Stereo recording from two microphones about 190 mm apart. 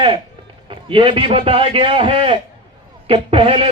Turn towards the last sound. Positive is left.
turn(degrees=-30)  # may be behind; listen again after turning